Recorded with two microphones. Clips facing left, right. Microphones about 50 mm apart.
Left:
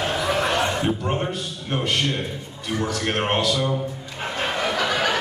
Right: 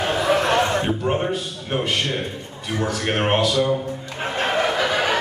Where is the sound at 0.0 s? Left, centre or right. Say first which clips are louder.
Right 4 dB; centre.